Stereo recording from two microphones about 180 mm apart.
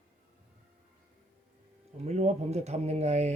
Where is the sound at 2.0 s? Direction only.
40° right (ahead or behind).